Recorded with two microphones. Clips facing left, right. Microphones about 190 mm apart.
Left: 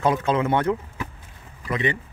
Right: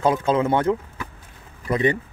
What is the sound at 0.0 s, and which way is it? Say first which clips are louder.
Speech: right 2 dB; 30° right (ahead or behind).